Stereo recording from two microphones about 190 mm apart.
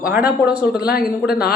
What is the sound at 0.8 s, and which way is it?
Mantra, 50° left (ahead or behind).